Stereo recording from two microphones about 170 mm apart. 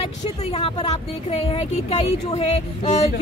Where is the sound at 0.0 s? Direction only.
35° left (ahead or behind).